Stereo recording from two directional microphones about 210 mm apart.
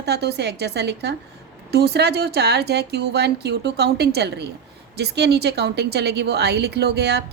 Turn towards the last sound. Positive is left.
turn(degrees=-50)  # may be behind; listen again after turning